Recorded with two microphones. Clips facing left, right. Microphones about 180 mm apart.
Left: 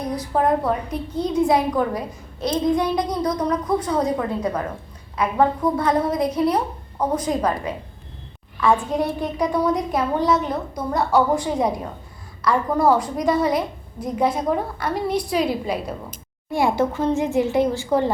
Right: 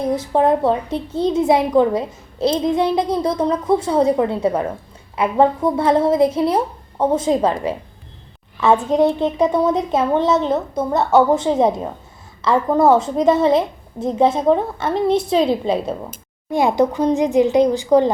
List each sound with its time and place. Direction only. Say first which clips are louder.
0.0 s a woman's voice: right 5 dB; 25° right (ahead or behind)